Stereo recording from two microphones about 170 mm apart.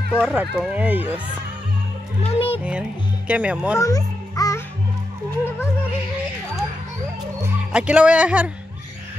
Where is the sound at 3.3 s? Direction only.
10° right (ahead or behind).